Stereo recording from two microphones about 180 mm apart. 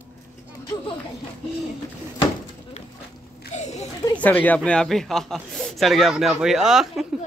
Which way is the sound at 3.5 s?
40° left (ahead or behind).